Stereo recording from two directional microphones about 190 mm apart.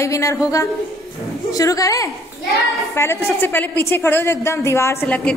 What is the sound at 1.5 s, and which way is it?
A woman's voice, 20° left (ahead or behind).